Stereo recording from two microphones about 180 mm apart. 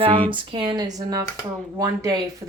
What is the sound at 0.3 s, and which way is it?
Speech, 25° right (ahead or behind).